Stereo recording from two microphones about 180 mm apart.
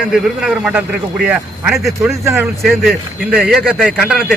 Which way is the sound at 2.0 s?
15° right (ahead or behind).